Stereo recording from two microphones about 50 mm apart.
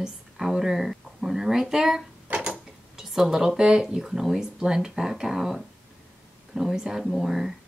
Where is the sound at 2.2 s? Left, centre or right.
Right.